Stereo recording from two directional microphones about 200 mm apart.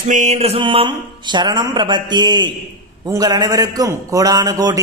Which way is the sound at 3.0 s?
20° right (ahead or behind).